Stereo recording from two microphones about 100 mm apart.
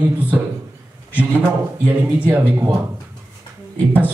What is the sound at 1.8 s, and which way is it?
Speech, 15° right (ahead or behind).